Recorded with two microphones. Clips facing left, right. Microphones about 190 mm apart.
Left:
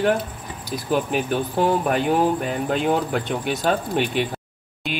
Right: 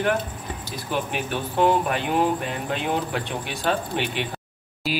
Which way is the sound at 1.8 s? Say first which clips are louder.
Left 3 dB; 45° left (ahead or behind).